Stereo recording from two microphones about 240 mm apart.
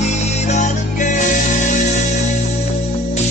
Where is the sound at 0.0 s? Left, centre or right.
Left.